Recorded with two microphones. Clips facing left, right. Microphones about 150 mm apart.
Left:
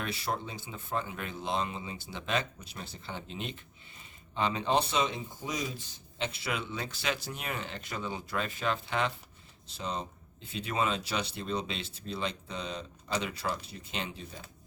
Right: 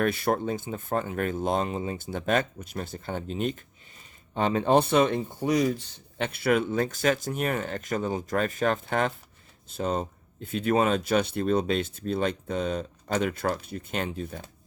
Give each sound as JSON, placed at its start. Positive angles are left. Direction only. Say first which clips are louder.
{"t": 0.0, "sound": "speech", "louder": "right 10 dB", "side_deg": -55}